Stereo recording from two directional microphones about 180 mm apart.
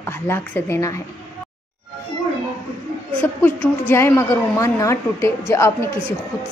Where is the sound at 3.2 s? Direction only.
10° left (ahead or behind).